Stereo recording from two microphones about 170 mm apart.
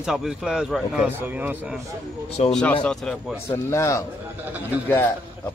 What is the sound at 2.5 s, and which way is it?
Speech, 5° left (ahead or behind).